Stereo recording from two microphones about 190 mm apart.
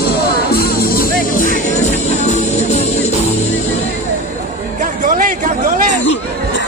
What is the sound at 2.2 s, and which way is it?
Music, 35° left (ahead or behind).